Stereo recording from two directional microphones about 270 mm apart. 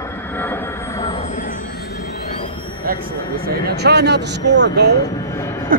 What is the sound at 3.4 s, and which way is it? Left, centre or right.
Speech, right.